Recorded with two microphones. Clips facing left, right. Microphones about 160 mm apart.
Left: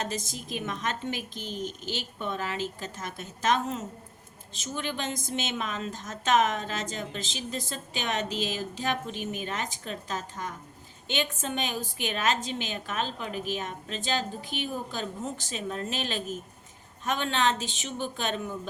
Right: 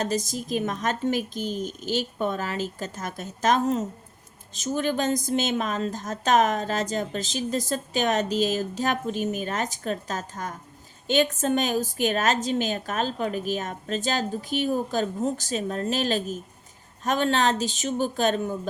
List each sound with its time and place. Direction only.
0.0 s a woman's voice: 40° right (ahead or behind)